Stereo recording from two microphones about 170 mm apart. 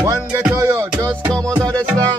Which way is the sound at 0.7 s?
20° right (ahead or behind).